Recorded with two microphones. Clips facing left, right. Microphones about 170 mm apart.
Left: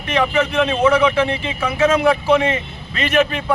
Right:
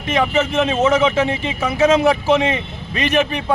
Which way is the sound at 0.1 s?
25° right (ahead or behind).